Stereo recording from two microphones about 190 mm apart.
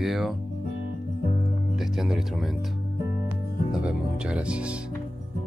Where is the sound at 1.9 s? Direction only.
Centre (ahead or behind).